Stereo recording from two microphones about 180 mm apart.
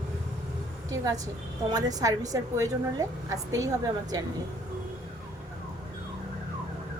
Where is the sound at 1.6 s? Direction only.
20° right (ahead or behind).